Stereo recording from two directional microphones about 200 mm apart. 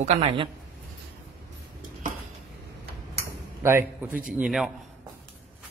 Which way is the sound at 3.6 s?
10° right (ahead or behind).